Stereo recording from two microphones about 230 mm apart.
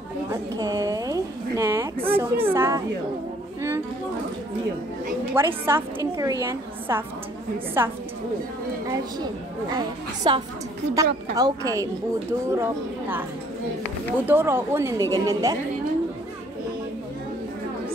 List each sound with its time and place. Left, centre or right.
0.3 s a woman's voice: centre
5.4 s a woman's voice: centre
14.1 s a woman's voice: centre